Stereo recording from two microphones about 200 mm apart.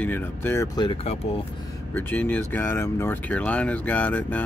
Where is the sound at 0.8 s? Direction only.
30° left (ahead or behind).